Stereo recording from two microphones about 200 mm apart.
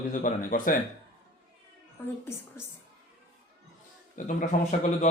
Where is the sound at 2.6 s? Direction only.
15° left (ahead or behind).